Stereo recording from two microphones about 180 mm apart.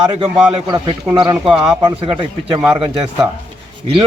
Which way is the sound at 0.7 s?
25° right (ahead or behind).